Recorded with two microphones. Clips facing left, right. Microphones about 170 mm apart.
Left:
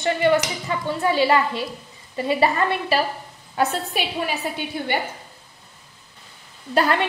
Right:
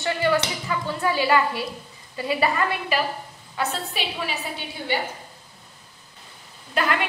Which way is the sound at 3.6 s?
50° left (ahead or behind).